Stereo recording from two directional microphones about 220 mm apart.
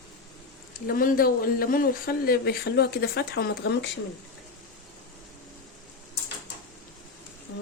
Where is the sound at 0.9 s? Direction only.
40° left (ahead or behind).